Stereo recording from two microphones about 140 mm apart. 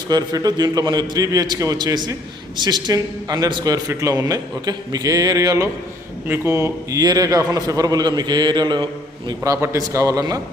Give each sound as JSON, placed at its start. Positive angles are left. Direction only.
{"t": 0.1, "sound": "a man's voice", "side_deg": -25}